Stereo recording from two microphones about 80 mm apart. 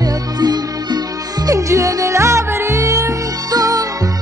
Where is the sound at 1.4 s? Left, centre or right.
Right.